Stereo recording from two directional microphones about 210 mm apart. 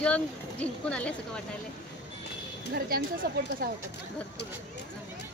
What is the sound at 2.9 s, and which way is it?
Speech, 45° right (ahead or behind).